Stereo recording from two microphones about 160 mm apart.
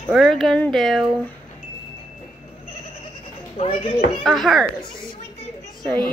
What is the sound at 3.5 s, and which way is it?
Speech, 35° left (ahead or behind).